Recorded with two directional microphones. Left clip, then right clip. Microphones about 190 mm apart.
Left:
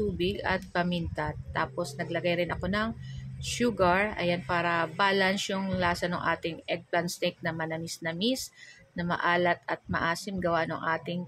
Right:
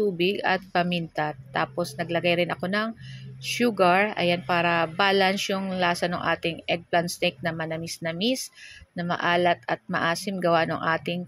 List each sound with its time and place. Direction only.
0.2 s speech: 15° right (ahead or behind)